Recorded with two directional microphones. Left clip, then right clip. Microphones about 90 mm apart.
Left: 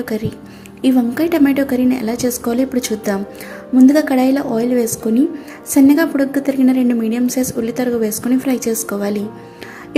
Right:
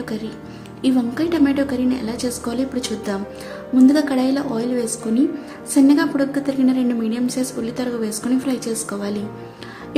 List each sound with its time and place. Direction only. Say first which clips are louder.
0.0 s a woman's voice: left 6 dB; 50° left (ahead or behind)